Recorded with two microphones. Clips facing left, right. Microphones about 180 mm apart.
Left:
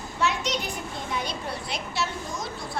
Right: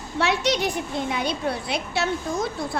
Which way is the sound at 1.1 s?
65° right (ahead or behind).